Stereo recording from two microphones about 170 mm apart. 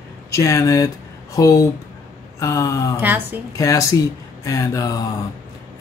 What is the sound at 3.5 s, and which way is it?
Speech, 20° left (ahead or behind).